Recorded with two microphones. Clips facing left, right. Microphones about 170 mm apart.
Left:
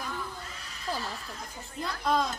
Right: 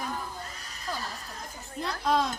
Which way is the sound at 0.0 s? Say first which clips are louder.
Right 2 dB; 45° right (ahead or behind).